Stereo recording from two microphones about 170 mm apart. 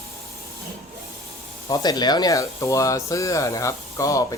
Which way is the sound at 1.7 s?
25° left (ahead or behind).